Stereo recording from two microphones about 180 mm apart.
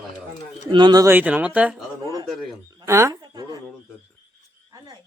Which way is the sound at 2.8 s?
15° right (ahead or behind).